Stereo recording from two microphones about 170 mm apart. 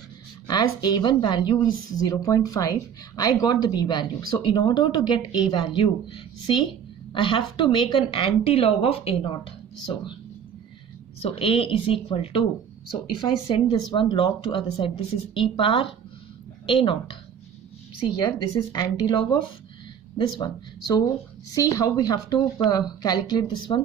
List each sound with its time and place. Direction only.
0.5 s speech: 25° left (ahead or behind)
11.1 s speech: 35° left (ahead or behind)